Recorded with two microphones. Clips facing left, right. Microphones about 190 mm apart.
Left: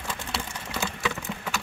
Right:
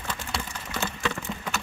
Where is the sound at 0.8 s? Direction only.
10° left (ahead or behind).